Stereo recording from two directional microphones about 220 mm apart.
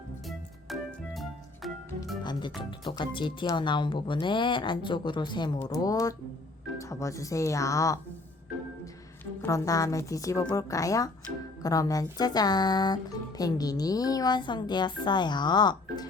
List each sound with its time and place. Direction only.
0.3 s music: centre (ahead or behind)
2.6 s a woman's voice: 20° left (ahead or behind)
9.4 s a woman's voice: 15° left (ahead or behind)